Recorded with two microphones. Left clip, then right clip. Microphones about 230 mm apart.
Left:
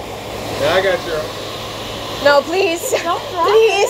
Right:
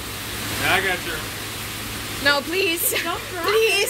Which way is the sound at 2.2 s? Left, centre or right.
Right.